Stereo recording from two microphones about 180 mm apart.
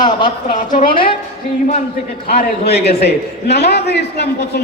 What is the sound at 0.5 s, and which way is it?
Speech, 45° left (ahead or behind).